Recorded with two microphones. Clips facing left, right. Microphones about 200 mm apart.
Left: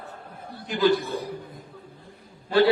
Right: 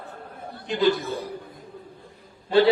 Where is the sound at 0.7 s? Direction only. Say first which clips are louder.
Even; 20° right (ahead or behind).